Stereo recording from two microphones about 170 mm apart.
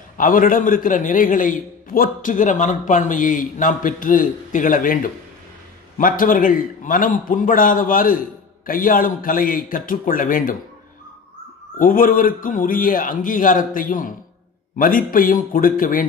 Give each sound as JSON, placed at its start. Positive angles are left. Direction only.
{"t": 0.2, "sound": "a man's voice", "side_deg": 55}
{"t": 11.8, "sound": "a man's voice", "side_deg": 55}